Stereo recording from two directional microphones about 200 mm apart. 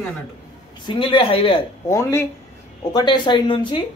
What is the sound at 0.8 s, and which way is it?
Speech, 25° left (ahead or behind).